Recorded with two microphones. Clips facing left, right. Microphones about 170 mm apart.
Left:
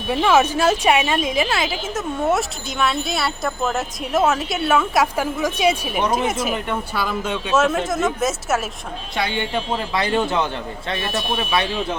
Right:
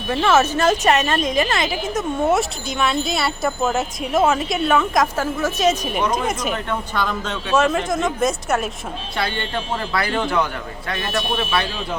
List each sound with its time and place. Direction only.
0.1 s a woman's voice: 10° left (ahead or behind)
9.1 s speech: 15° left (ahead or behind)